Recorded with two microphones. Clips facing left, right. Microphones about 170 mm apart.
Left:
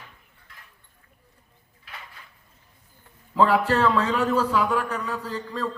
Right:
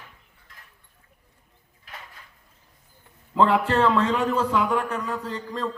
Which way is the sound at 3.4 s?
25° right (ahead or behind).